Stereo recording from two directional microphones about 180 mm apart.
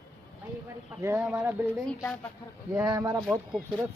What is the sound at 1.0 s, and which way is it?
Speech, 10° right (ahead or behind).